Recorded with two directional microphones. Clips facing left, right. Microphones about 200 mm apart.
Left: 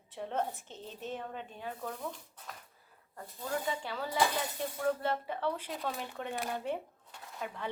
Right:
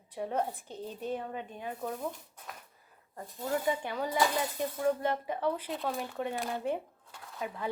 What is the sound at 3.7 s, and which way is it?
Speech, 15° right (ahead or behind).